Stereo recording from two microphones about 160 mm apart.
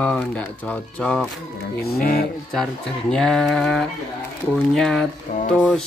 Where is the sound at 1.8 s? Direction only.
75° left (ahead or behind).